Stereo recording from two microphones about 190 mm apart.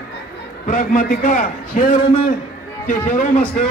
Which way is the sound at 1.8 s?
30° left (ahead or behind).